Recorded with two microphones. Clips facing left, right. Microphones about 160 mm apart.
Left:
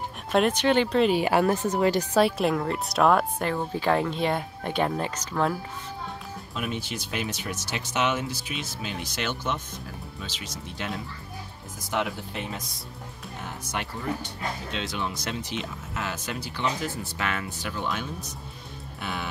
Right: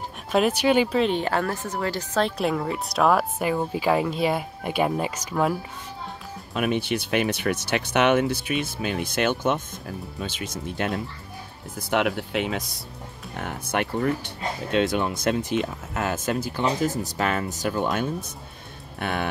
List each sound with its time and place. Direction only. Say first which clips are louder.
0.3 s speech: right 2 dB; 5° right (ahead or behind)
6.5 s speech: right 8 dB; 65° right (ahead or behind)
11.9 s speech: right 6 dB; 70° right (ahead or behind)
13.4 s speech: right 7 dB; 60° right (ahead or behind)
18.9 s music: right 6 dB; 55° right (ahead or behind)